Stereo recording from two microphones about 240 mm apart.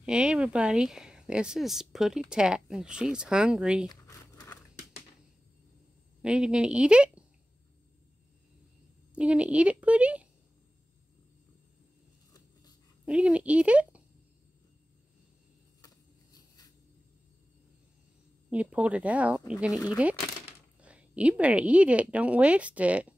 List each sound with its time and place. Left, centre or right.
0.0 s speech: centre
3.9 s a sound: centre
6.2 s speech: centre
9.1 s speech: centre
13.0 s speech: centre
18.5 s speech: centre